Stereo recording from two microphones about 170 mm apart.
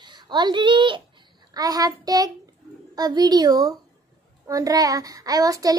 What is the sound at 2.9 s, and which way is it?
A child's voice, 25° right (ahead or behind).